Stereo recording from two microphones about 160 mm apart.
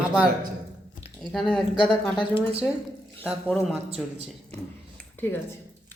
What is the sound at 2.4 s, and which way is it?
Speech, 10° right (ahead or behind).